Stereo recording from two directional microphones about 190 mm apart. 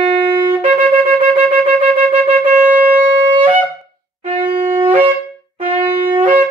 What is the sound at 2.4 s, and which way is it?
Shofar, 10° right (ahead or behind).